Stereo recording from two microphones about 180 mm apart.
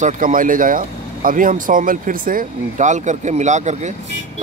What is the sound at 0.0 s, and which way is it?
Speech, 50° right (ahead or behind).